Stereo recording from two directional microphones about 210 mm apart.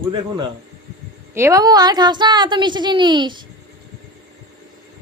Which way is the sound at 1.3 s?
15° right (ahead or behind).